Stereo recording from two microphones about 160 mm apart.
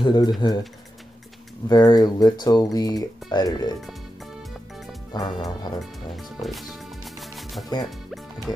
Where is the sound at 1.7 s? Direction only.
25° left (ahead or behind).